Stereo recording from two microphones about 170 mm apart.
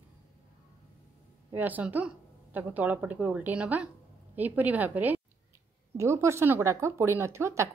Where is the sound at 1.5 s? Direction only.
10° right (ahead or behind).